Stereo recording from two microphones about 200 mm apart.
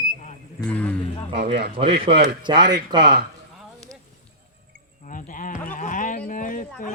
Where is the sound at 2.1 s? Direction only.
25° right (ahead or behind).